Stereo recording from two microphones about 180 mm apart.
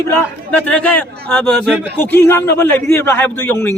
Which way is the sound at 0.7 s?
5° left (ahead or behind).